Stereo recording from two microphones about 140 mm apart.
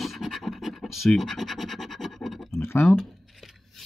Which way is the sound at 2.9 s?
Centre (ahead or behind).